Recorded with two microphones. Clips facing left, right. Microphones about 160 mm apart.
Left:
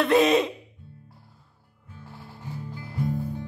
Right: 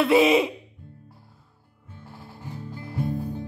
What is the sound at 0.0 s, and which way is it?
Speech, 5° right (ahead or behind).